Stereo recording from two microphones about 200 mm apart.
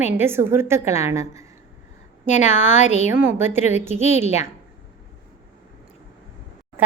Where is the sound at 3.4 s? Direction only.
35° left (ahead or behind).